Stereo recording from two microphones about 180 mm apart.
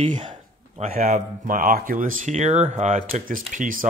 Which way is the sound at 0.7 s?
35° right (ahead or behind).